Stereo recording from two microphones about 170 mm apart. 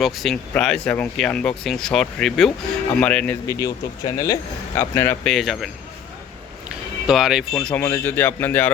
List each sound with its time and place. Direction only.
0.0 s speech: centre (ahead or behind)
3.4 s speech: 20° left (ahead or behind)
5.3 s speech: centre (ahead or behind)
7.1 s speech: 5° right (ahead or behind)